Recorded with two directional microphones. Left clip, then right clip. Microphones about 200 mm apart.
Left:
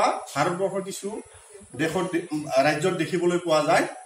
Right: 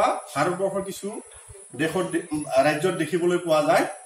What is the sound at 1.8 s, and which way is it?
A man's voice, 10° left (ahead or behind).